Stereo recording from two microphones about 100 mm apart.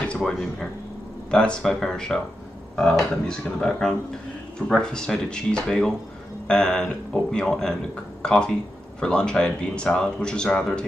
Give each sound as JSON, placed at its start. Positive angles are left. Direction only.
{"t": 0.2, "sound": "speech", "side_deg": 10}